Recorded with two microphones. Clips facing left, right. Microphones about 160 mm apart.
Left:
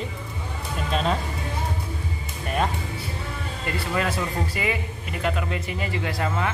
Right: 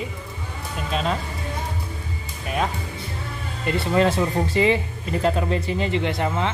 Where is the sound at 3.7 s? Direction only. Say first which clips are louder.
Right 7 dB; 25° right (ahead or behind).